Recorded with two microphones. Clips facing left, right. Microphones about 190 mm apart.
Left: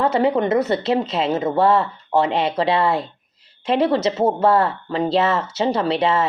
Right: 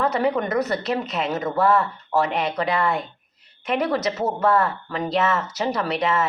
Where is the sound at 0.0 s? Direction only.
25° left (ahead or behind).